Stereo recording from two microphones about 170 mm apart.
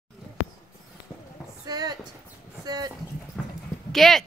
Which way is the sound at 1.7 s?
25° right (ahead or behind).